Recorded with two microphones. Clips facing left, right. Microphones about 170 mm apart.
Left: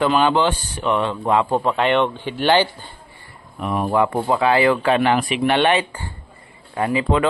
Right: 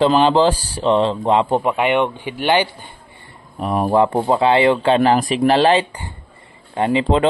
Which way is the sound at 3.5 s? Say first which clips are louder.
Right 3 dB; 35° right (ahead or behind).